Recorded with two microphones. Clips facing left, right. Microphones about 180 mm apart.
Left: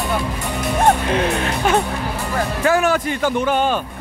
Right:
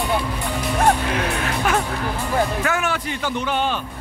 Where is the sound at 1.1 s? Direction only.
25° left (ahead or behind).